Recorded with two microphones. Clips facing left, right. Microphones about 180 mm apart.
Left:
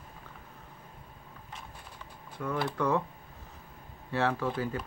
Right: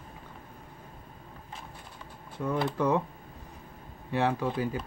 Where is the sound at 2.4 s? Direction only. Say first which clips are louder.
Right 3 dB; 20° right (ahead or behind).